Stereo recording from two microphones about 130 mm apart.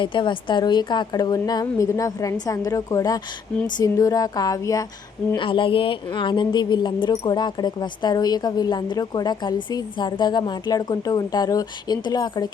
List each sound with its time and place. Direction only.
0.0 s a woman's voice: 40° left (ahead or behind)
5.4 s speech: 40° left (ahead or behind)